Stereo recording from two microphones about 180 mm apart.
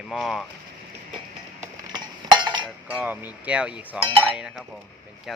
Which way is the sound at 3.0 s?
10° right (ahead or behind).